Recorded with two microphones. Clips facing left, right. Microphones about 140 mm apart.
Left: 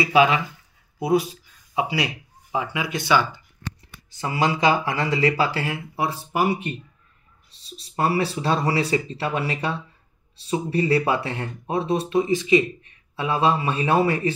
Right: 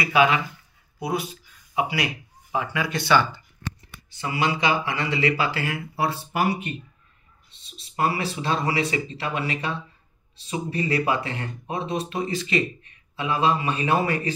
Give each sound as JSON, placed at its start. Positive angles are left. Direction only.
{"t": 0.0, "sound": "speech", "side_deg": 30}
{"t": 1.1, "sound": "a sound", "side_deg": 35}
{"t": 2.5, "sound": "speech", "side_deg": 20}
{"t": 4.1, "sound": "speech", "side_deg": 40}
{"t": 5.9, "sound": "speech", "side_deg": 15}
{"t": 7.6, "sound": "a man's voice", "side_deg": 35}